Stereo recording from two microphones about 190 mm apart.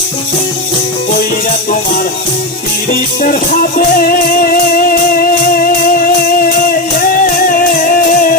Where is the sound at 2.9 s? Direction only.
50° left (ahead or behind).